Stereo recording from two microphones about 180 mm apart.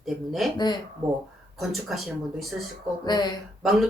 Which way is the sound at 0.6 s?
25° left (ahead or behind).